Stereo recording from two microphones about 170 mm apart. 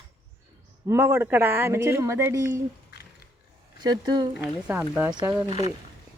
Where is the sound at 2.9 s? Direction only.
70° left (ahead or behind).